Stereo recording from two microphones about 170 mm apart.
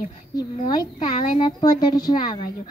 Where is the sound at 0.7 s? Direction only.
25° left (ahead or behind).